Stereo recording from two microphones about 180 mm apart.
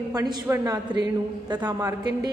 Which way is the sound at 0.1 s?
20° right (ahead or behind).